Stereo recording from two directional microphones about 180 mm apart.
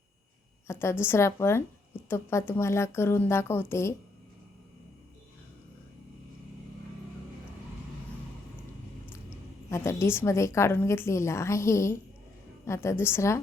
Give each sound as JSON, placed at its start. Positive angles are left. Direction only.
{"t": 0.7, "sound": "a woman's voice", "side_deg": 15}
{"t": 9.6, "sound": "a woman's voice", "side_deg": 15}